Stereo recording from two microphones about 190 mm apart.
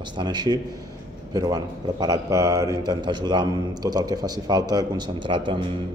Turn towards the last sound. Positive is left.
turn(degrees=-25)  # may be behind; listen again after turning